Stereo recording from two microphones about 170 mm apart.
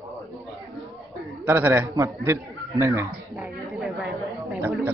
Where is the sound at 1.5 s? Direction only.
10° right (ahead or behind).